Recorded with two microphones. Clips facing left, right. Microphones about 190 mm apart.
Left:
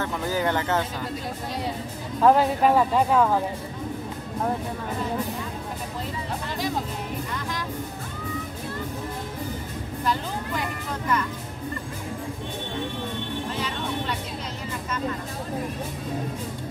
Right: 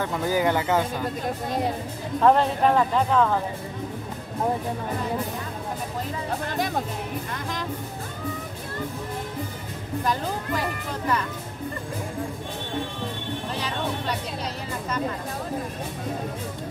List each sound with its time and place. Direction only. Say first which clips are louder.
0.0 s speech: right 2 dB; 15° right (ahead or behind)
1.2 s speech: right 4 dB; 50° right (ahead or behind)
2.2 s speech: left 1 dB; 5° left (ahead or behind)